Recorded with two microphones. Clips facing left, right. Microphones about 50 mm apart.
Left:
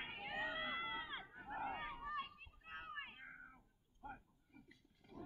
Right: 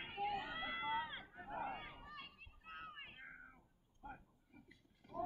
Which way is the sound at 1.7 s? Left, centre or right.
Left.